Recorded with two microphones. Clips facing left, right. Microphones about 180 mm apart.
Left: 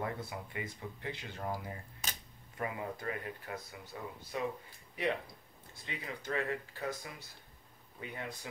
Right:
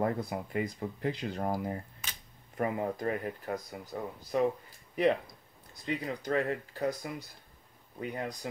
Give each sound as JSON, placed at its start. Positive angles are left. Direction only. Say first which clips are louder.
{"t": 0.0, "sound": "speech", "louder": "right 8 dB", "side_deg": -40}